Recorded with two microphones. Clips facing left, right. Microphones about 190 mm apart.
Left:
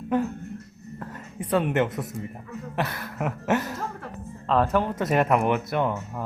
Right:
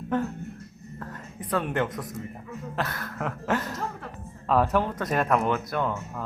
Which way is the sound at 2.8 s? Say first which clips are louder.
Left 3 dB; 5° left (ahead or behind).